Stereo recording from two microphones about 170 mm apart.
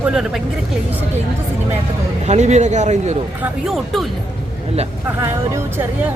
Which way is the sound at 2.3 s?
40° right (ahead or behind).